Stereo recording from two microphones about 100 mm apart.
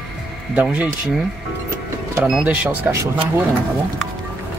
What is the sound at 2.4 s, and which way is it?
Speech, 10° right (ahead or behind).